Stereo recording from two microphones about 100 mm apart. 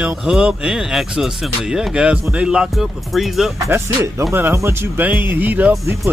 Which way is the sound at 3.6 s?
30° right (ahead or behind).